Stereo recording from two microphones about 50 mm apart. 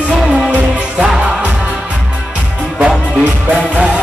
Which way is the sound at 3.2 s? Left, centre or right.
Right.